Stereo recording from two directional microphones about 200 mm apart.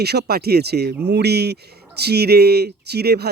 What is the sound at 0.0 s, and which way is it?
Speech, 55° right (ahead or behind).